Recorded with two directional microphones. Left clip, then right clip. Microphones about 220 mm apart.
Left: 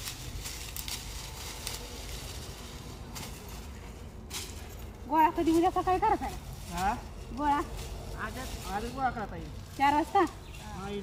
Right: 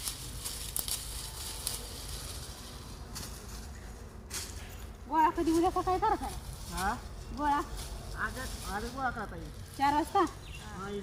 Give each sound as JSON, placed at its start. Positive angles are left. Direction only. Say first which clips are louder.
{"t": 0.9, "sound": "a sound", "louder": "even", "side_deg": -10}
{"t": 5.1, "sound": "speech", "louder": "left 2 dB", "side_deg": 10}
{"t": 7.3, "sound": "speech", "louder": "left 1 dB", "side_deg": -5}
{"t": 8.2, "sound": "speech", "louder": "right 2 dB", "side_deg": 15}
{"t": 9.7, "sound": "speech", "louder": "left 2 dB", "side_deg": 0}